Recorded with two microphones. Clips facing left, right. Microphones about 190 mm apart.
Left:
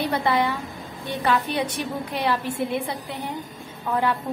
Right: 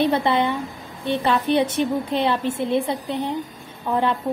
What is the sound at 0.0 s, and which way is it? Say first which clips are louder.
A woman's voice: right 3 dB; 25° right (ahead or behind).